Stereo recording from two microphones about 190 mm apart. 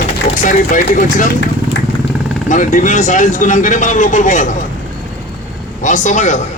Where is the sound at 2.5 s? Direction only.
40° left (ahead or behind).